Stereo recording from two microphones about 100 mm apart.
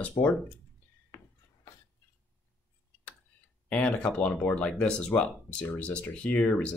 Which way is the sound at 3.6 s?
15° left (ahead or behind).